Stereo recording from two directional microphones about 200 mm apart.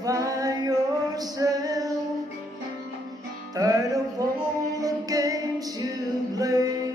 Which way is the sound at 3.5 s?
15° right (ahead or behind).